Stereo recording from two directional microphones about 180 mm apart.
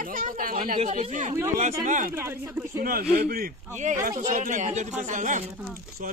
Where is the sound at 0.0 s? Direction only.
50° right (ahead or behind).